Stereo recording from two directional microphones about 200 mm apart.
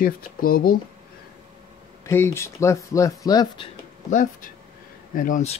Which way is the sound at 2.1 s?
10° left (ahead or behind).